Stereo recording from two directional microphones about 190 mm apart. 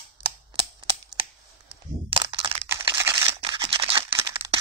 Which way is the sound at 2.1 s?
30° right (ahead or behind).